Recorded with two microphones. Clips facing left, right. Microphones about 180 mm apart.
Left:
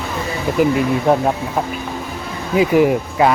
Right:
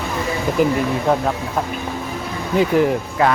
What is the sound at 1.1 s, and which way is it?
Speech, 15° left (ahead or behind).